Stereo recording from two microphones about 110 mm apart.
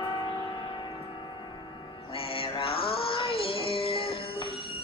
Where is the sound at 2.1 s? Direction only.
55° left (ahead or behind).